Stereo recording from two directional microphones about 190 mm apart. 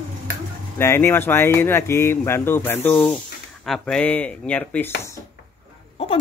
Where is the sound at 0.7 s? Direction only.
10° left (ahead or behind).